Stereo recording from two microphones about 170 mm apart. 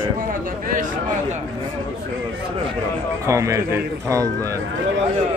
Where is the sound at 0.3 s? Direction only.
55° right (ahead or behind).